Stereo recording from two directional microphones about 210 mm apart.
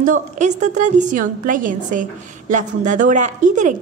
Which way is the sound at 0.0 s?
35° right (ahead or behind).